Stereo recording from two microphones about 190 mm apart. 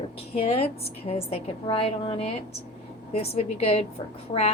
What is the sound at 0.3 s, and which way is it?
A woman's voice, 35° left (ahead or behind).